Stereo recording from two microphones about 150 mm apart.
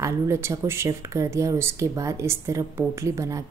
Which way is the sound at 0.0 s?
20° right (ahead or behind).